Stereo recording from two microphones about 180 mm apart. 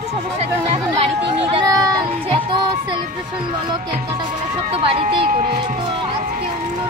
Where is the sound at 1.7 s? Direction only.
20° right (ahead or behind).